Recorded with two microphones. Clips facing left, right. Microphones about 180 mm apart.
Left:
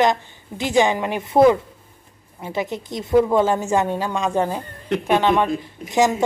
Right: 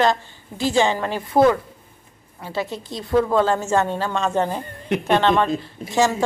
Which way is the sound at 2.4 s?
20° left (ahead or behind).